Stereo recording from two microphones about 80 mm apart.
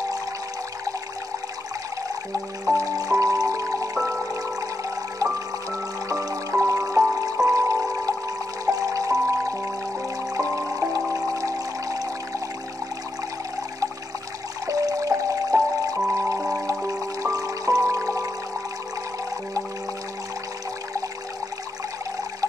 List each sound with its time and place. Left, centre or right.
2.7 s music: right
14.7 s music: right